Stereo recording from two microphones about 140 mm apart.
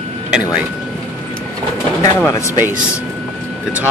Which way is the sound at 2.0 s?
25° left (ahead or behind).